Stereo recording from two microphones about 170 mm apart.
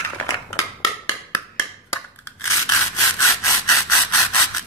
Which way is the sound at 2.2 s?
20° left (ahead or behind).